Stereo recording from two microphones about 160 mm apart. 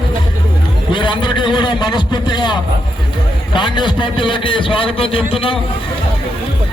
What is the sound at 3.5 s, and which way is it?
A man's voice, 30° left (ahead or behind).